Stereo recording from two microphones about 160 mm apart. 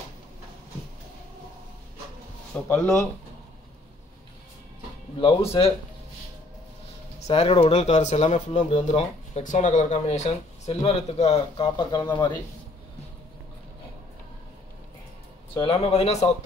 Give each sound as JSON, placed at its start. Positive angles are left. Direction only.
{"t": 2.5, "sound": "speech", "side_deg": 10}
{"t": 5.2, "sound": "speech", "side_deg": 35}
{"t": 7.2, "sound": "speech", "side_deg": 40}
{"t": 7.7, "sound": "speech", "side_deg": 45}
{"t": 15.6, "sound": "speech", "side_deg": 35}